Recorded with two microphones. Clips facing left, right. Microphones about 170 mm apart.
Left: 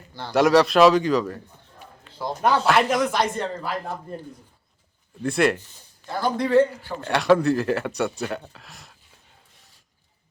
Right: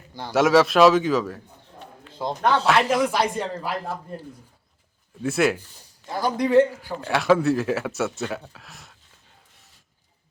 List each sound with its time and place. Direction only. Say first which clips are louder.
0.1 s a man's voice: right 1 dB; 15° right (ahead or behind)
0.3 s speech: even; centre (ahead or behind)
2.4 s speech: left 1 dB; 5° left (ahead or behind)
5.2 s speech: even; centre (ahead or behind)
6.3 s a man's voice: right 1 dB; 20° right (ahead or behind)
6.8 s speech: left 1 dB; 5° right (ahead or behind)